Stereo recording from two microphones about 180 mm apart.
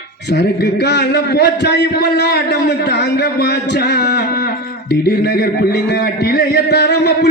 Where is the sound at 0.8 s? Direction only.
65° left (ahead or behind).